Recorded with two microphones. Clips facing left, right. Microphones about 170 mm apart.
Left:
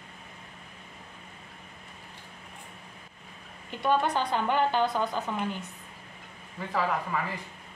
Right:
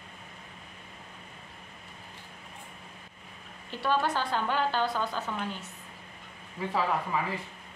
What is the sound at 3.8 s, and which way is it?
A woman's voice, 20° left (ahead or behind).